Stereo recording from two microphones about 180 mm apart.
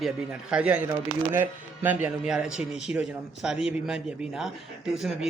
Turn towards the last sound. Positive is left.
turn(degrees=0)  # may be behind; listen again after turning